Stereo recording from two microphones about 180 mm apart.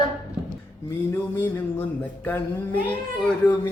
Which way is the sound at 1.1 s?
10° left (ahead or behind).